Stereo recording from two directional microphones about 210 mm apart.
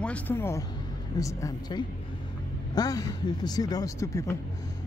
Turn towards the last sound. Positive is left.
turn(degrees=15)  # may be behind; listen again after turning